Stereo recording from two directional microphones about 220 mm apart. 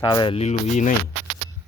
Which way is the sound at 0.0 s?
20° left (ahead or behind).